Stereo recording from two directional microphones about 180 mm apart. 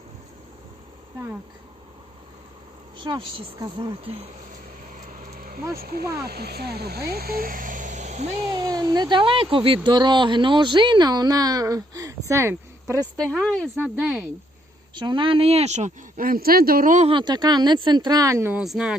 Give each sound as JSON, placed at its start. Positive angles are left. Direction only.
{"t": 3.0, "sound": "speech", "side_deg": -25}
{"t": 5.2, "sound": "a sound", "side_deg": -50}
{"t": 5.7, "sound": "speech", "side_deg": -55}
{"t": 8.4, "sound": "speech", "side_deg": -20}
{"t": 13.4, "sound": "speech", "side_deg": 5}
{"t": 13.7, "sound": "speech", "side_deg": -10}
{"t": 14.9, "sound": "speech", "side_deg": -25}
{"t": 17.1, "sound": "speech", "side_deg": -25}